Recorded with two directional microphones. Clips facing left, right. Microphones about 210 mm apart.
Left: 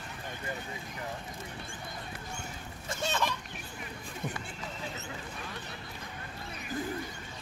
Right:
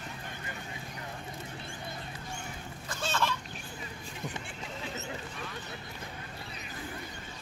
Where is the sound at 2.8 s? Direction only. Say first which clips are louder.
Even; 20° left (ahead or behind).